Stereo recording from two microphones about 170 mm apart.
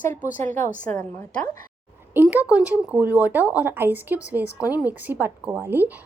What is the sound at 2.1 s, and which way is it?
A woman's voice, 10° right (ahead or behind).